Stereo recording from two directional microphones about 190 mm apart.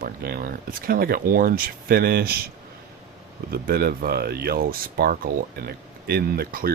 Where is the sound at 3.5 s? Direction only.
55° right (ahead or behind).